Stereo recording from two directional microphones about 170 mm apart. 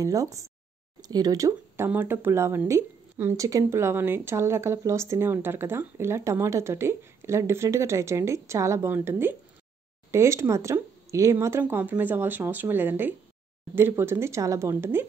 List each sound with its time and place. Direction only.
0.0 s speech: 20° right (ahead or behind)